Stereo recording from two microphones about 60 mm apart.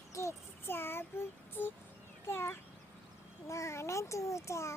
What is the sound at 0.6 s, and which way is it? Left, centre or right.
Child singing, left.